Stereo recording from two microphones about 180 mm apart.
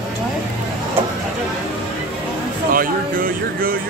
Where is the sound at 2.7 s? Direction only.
50° right (ahead or behind).